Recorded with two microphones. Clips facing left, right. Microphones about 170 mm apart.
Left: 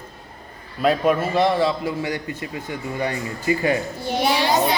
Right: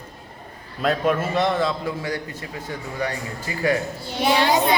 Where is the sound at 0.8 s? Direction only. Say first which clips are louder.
Left 3 dB; 5° left (ahead or behind).